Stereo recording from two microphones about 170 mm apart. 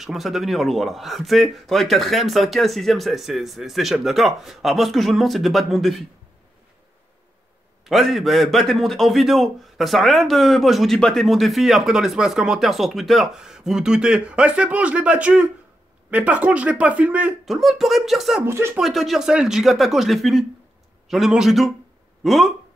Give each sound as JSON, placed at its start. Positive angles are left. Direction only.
{"t": 0.0, "sound": "a man's voice", "side_deg": 0}
{"t": 7.8, "sound": "a man's voice", "side_deg": 0}
{"t": 18.4, "sound": "speech", "side_deg": -15}
{"t": 18.8, "sound": "a man's voice", "side_deg": 0}